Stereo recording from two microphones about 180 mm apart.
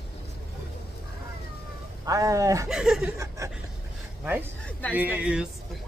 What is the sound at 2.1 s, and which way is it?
Speech, 20° right (ahead or behind).